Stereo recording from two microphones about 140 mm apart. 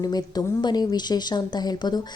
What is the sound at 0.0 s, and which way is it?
A woman's voice, 30° left (ahead or behind).